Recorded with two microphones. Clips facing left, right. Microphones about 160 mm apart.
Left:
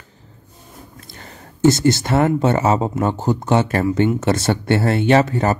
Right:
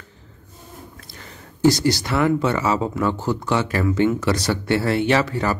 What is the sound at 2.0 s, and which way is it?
Speech, 50° left (ahead or behind).